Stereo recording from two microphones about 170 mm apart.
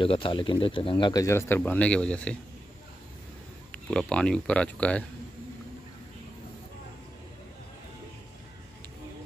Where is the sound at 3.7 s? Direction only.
5° left (ahead or behind).